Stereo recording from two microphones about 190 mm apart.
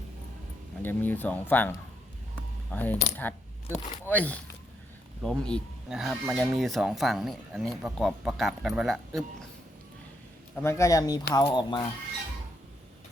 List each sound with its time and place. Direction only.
0.8 s speech: 10° left (ahead or behind)
2.3 s coin: 10° left (ahead or behind)
4.0 s speech: 5° left (ahead or behind)
10.5 s speech: 15° left (ahead or behind)